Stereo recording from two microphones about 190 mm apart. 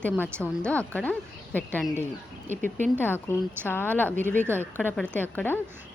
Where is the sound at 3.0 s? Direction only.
10° left (ahead or behind).